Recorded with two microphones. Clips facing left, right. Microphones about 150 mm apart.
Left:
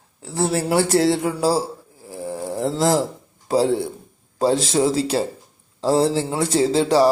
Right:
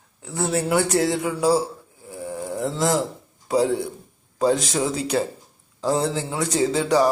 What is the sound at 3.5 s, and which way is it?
Speech, 35° left (ahead or behind).